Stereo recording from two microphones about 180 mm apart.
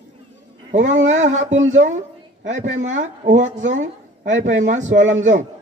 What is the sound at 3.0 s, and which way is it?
Speech, 45° right (ahead or behind).